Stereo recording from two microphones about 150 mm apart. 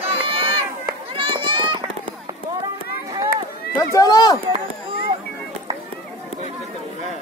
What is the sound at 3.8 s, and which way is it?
Run, 25° left (ahead or behind).